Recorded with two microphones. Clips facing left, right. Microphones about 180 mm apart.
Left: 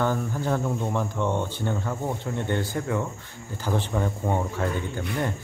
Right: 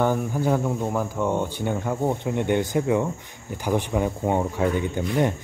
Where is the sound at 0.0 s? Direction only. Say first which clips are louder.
Right 4 dB; 15° right (ahead or behind).